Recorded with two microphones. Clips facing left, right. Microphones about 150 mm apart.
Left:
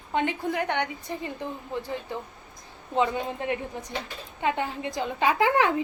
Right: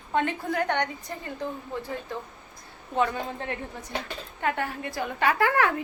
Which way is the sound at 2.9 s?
20° left (ahead or behind).